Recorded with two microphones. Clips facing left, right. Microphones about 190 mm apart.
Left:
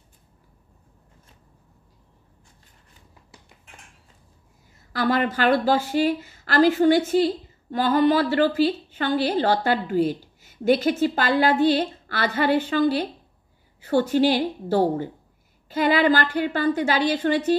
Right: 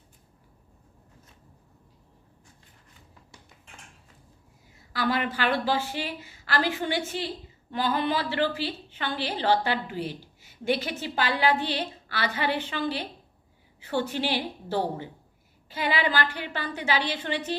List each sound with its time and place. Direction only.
4.9 s a woman's voice: 45° left (ahead or behind)